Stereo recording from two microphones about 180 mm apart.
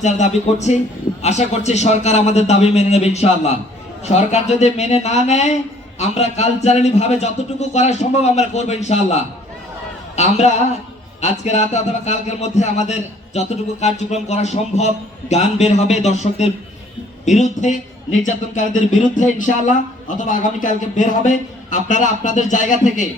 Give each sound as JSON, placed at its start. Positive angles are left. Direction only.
{"t": 0.0, "sound": "a man's voice", "side_deg": 40}